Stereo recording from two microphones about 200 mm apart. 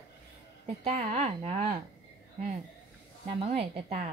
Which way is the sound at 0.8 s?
35° right (ahead or behind).